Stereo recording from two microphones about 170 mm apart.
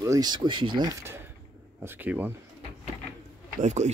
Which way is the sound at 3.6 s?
45° right (ahead or behind).